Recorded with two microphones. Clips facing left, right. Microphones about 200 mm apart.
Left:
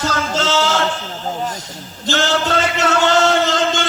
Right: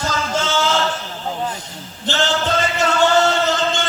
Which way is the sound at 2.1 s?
75° left (ahead or behind).